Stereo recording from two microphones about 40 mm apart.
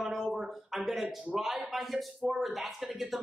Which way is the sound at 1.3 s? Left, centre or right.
Centre.